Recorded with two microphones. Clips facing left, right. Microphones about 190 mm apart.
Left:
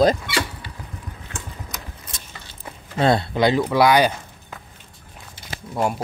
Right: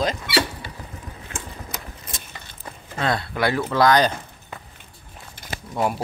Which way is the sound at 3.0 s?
25° left (ahead or behind).